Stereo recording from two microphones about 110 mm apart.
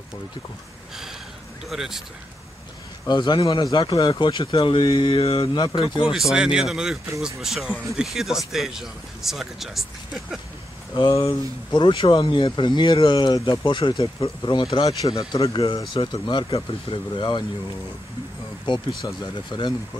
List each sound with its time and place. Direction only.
1.7 s speech: 5° right (ahead or behind)
3.1 s speech: 45° left (ahead or behind)
6.1 s speech: 5° right (ahead or behind)
11.0 s speech: 50° left (ahead or behind)
15.5 s speech: 50° left (ahead or behind)
18.7 s speech: 45° left (ahead or behind)